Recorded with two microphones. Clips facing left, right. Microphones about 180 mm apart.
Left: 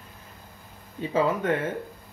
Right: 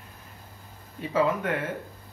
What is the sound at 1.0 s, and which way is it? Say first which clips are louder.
Speech: left 1 dB; 25° left (ahead or behind).